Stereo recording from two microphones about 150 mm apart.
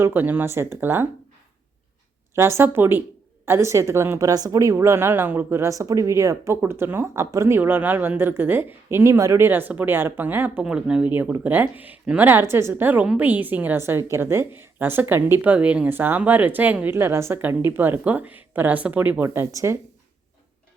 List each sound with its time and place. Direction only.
0.0 s a woman's voice: 15° right (ahead or behind)
2.3 s a woman's voice: 15° right (ahead or behind)